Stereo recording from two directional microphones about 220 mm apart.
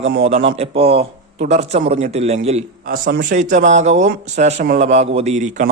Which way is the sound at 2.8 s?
40° right (ahead or behind).